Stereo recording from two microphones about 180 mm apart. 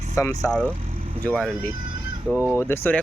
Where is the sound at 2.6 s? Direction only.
15° left (ahead or behind).